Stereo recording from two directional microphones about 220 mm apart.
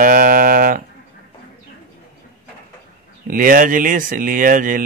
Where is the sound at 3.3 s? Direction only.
40° right (ahead or behind).